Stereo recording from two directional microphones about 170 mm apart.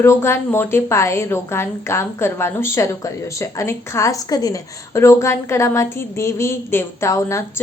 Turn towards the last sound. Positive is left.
turn(degrees=15)  # may be behind; listen again after turning